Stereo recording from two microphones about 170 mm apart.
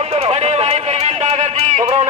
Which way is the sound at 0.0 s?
35° right (ahead or behind).